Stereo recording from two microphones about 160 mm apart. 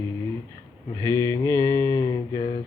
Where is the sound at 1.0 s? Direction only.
20° left (ahead or behind).